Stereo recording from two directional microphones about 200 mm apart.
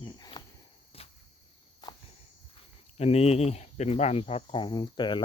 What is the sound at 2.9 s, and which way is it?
Speech, 30° left (ahead or behind).